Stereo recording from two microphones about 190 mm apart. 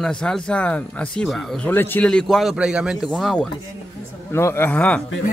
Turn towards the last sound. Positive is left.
turn(degrees=5)  # may be behind; listen again after turning